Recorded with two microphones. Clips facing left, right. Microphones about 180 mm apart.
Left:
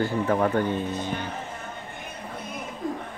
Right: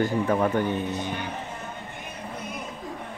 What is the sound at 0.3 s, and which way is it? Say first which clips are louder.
Speech: even; 20° right (ahead or behind).